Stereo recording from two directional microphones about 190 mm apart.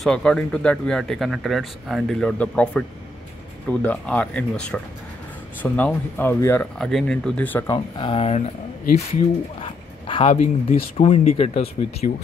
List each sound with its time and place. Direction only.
0.0 s speech: 5° left (ahead or behind)
3.8 s speech: 5° left (ahead or behind)
7.7 s speech: 25° left (ahead or behind)